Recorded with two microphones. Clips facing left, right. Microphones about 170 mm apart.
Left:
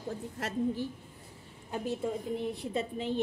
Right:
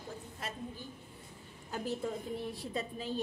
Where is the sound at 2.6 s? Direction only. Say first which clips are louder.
Left 5 dB; 20° left (ahead or behind).